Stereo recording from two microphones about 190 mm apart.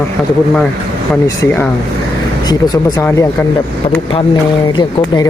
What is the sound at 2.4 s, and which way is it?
Speech, 20° left (ahead or behind).